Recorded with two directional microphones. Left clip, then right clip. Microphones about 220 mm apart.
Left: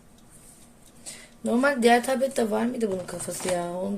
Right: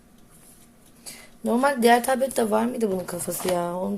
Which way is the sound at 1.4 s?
15° right (ahead or behind).